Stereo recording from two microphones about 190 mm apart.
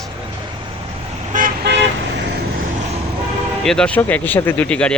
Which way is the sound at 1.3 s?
50° right (ahead or behind).